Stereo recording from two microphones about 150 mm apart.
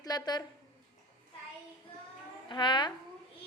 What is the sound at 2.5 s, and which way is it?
Speech, 30° left (ahead or behind).